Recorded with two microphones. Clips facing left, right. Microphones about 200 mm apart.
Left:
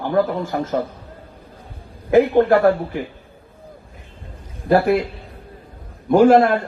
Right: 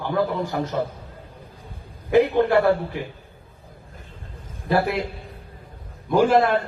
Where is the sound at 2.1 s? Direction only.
45° left (ahead or behind).